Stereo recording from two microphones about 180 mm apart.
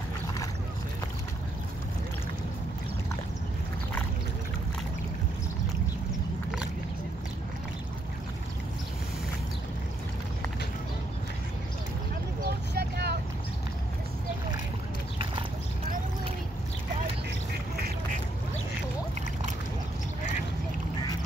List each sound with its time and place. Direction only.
12.4 s vehicle: 65° right (ahead or behind)